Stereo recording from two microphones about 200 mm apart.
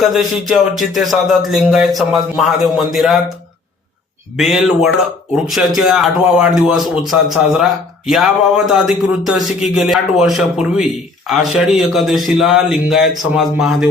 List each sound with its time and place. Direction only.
0.0 s speech: centre (ahead or behind)
4.4 s speech: centre (ahead or behind)